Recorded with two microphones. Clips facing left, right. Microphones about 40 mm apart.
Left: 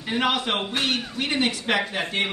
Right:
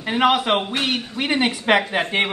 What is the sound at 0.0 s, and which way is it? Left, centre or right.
A man's voice, centre.